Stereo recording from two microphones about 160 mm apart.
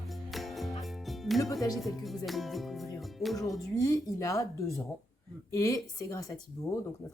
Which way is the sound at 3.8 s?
20° left (ahead or behind).